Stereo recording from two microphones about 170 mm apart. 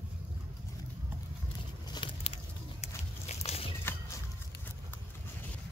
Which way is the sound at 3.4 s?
35° left (ahead or behind).